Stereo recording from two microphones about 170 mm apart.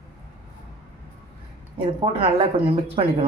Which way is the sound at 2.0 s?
35° right (ahead or behind).